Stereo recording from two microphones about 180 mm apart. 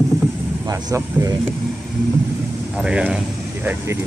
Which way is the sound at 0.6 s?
15° right (ahead or behind).